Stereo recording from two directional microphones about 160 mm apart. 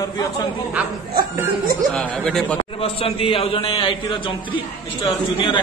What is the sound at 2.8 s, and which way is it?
A man's voice, 35° left (ahead or behind).